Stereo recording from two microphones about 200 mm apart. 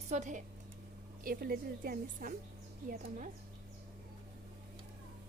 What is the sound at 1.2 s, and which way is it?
A woman's voice, 45° right (ahead or behind).